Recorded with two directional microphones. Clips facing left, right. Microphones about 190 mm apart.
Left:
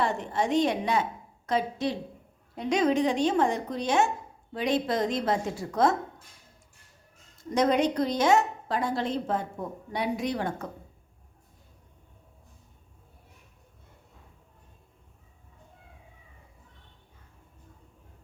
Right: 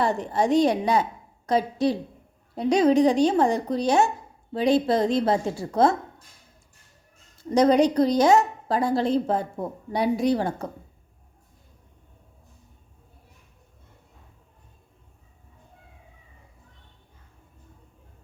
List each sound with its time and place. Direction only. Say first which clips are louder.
0.0 s a woman's voice: right 4 dB; 35° right (ahead or behind)
7.5 s a woman's voice: right 6 dB; 35° right (ahead or behind)